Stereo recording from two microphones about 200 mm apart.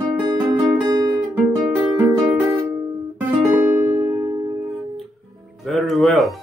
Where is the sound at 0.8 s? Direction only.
20° right (ahead or behind).